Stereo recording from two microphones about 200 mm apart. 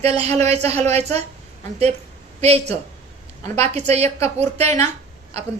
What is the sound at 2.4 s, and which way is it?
A woman's voice, 30° right (ahead or behind).